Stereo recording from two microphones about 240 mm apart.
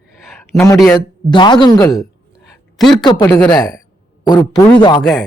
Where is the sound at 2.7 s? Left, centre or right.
Centre.